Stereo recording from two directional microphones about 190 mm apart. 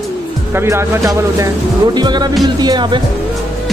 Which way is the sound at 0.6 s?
15° right (ahead or behind).